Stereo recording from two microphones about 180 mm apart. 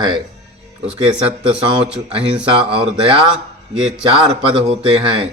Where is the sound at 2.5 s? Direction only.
30° right (ahead or behind).